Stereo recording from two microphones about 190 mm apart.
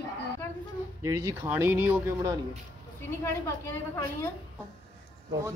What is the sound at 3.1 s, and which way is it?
A woman's voice, 15° left (ahead or behind).